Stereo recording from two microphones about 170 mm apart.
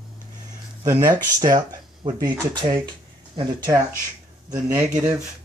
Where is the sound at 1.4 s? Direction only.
25° right (ahead or behind).